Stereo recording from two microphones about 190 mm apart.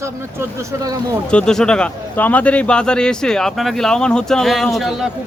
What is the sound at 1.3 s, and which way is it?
A man's voice, 5° left (ahead or behind).